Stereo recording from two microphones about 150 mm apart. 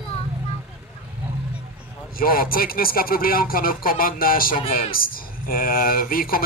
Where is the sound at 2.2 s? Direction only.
75° left (ahead or behind).